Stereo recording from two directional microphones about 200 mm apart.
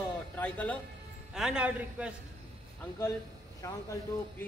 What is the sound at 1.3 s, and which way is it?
Speech, 5° right (ahead or behind).